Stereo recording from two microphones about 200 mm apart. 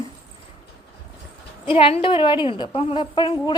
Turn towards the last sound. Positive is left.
turn(degrees=25)  # may be behind; listen again after turning